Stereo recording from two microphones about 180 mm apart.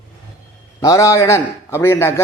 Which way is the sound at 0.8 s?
20° left (ahead or behind).